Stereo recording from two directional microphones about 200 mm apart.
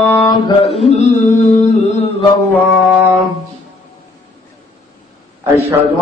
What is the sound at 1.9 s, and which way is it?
Mantra, 30° left (ahead or behind).